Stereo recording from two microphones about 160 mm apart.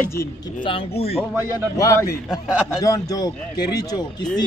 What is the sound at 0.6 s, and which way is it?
Speech, 35° left (ahead or behind).